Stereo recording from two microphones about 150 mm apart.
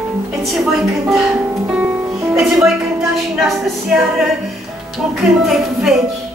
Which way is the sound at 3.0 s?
Centre (ahead or behind).